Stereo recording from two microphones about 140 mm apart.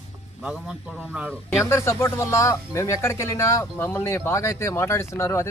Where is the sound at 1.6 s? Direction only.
20° left (ahead or behind).